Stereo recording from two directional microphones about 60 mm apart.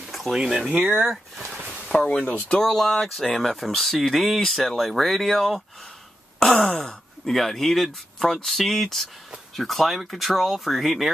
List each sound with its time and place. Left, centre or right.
0.3 s speech: centre
1.9 s speech: centre
2.4 s speech: centre